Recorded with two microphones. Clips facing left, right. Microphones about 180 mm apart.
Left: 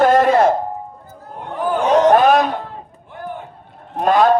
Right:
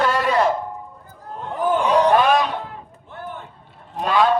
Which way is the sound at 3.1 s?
15° left (ahead or behind).